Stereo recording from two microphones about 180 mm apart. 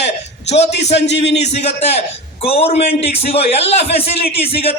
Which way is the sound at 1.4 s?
35° left (ahead or behind).